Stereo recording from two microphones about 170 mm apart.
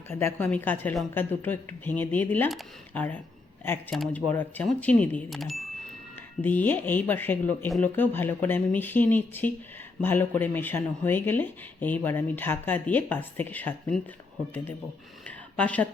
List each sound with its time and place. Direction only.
0.1 s speech: 15° left (ahead or behind)
15.5 s speech: 10° left (ahead or behind)